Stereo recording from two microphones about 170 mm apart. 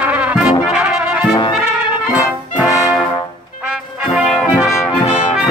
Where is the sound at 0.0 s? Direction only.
10° right (ahead or behind).